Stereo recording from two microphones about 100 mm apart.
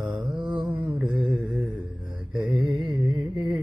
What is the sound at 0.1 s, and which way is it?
Mantra, 50° right (ahead or behind).